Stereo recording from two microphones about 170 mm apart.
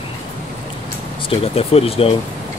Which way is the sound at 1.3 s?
35° left (ahead or behind).